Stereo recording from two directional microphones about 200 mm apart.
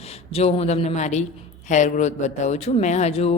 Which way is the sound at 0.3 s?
30° left (ahead or behind).